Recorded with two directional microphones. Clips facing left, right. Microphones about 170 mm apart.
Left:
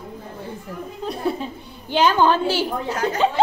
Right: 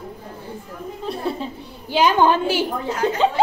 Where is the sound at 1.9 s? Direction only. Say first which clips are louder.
Right 1 dB; 10° right (ahead or behind).